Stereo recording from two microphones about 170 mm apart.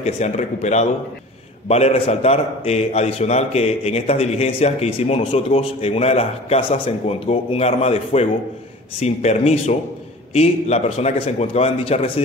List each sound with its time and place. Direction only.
0.0 s a man's voice: 40° left (ahead or behind)